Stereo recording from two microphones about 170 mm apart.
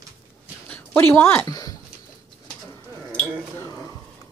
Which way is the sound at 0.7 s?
10° left (ahead or behind).